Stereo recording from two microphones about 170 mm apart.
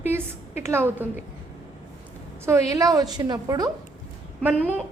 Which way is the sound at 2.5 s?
20° right (ahead or behind).